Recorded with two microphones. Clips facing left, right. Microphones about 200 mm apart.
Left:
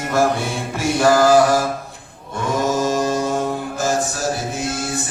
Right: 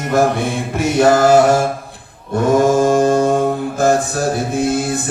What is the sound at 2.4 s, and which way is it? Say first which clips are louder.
Mantra: right 7 dB; 45° right (ahead or behind).